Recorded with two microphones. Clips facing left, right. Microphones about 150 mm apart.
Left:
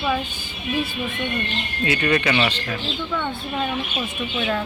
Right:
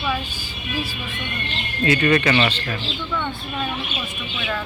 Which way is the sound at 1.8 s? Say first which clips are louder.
Right 3 dB; 10° left (ahead or behind).